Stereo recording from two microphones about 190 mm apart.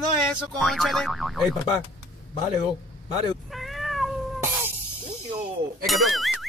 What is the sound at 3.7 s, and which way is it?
Cat, centre (ahead or behind).